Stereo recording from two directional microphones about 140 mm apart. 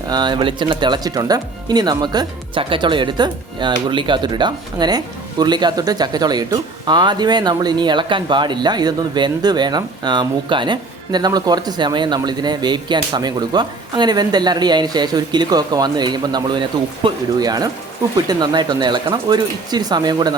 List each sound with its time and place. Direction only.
0.1 s speech: 30° right (ahead or behind)